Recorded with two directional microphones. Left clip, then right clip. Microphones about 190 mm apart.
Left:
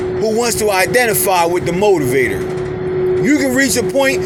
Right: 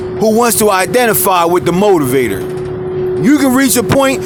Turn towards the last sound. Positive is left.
turn(degrees=-30)  # may be behind; listen again after turning